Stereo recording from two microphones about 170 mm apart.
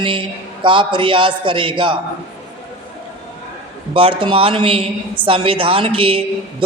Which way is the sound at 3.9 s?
30° right (ahead or behind).